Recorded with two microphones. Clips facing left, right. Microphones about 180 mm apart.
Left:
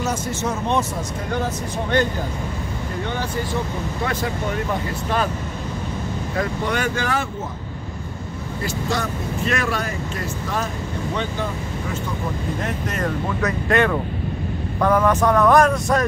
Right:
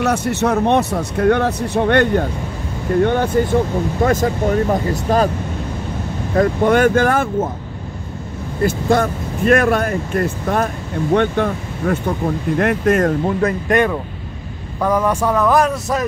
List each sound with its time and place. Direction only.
0.0 s speech: 65° right (ahead or behind); by 5.3 s 40° right (ahead or behind)
6.3 s speech: 50° right (ahead or behind)
8.6 s speech: 50° right (ahead or behind)
13.4 s speech: 15° right (ahead or behind)